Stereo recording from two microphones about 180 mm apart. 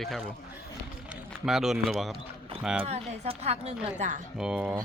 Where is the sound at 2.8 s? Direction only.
35° right (ahead or behind).